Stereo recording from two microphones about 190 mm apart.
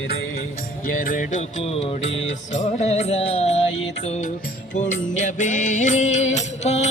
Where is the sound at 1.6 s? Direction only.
30° left (ahead or behind).